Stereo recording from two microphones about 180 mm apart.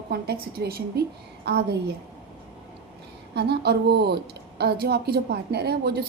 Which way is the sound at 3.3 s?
65° right (ahead or behind).